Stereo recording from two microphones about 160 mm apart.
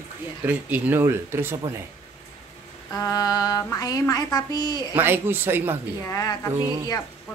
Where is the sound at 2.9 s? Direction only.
20° left (ahead or behind).